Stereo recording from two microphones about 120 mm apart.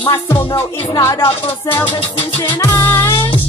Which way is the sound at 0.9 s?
30° left (ahead or behind).